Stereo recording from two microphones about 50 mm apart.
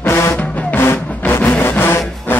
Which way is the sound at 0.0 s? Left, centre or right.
Left.